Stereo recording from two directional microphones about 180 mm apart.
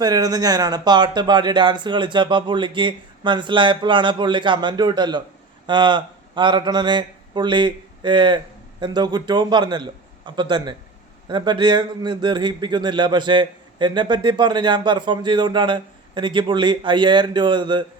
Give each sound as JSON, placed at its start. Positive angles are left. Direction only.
{"t": 0.0, "sound": "a man's voice", "side_deg": -20}